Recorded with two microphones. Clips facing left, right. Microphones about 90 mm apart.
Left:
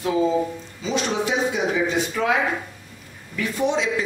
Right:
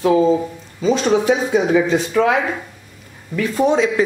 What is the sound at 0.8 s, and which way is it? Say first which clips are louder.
A man's voice: right 8 dB; 45° right (ahead or behind).